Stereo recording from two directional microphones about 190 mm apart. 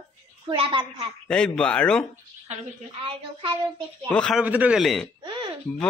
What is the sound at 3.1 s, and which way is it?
Speech, 30° right (ahead or behind).